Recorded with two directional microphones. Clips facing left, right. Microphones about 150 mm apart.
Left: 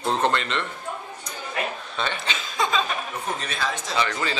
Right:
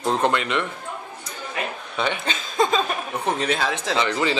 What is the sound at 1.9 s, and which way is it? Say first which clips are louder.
Speech: right 5 dB; 15° right (ahead or behind).